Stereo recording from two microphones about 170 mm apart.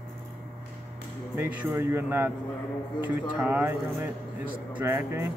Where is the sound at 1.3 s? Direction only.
15° right (ahead or behind).